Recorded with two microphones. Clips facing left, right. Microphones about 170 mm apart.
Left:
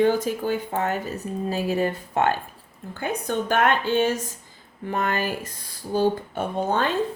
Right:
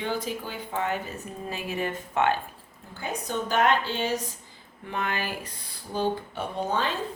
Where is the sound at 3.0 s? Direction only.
55° left (ahead or behind).